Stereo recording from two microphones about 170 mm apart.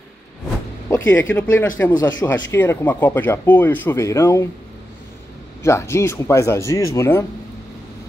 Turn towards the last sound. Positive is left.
turn(degrees=20)  # may be behind; listen again after turning